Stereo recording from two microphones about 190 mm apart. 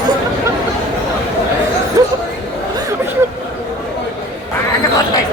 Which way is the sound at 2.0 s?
15° right (ahead or behind).